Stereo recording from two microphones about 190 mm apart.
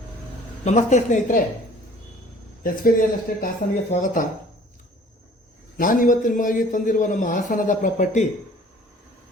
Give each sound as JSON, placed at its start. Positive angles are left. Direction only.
{"t": 0.6, "sound": "speech", "side_deg": 40}
{"t": 2.6, "sound": "a man's voice", "side_deg": 45}
{"t": 5.7, "sound": "a man's voice", "side_deg": 45}